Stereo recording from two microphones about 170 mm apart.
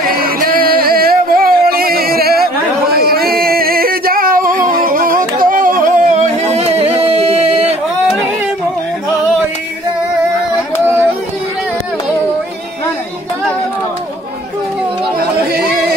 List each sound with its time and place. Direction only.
0.0 s music: 60° right (ahead or behind); by 7.6 s 40° right (ahead or behind)